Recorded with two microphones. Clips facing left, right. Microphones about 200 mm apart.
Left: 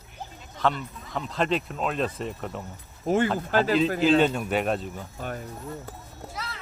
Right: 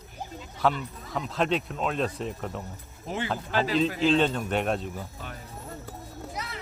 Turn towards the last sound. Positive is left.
turn(degrees=-20)  # may be behind; listen again after turning